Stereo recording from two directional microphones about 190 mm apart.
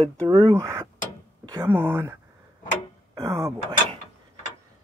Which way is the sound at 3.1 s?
15° right (ahead or behind).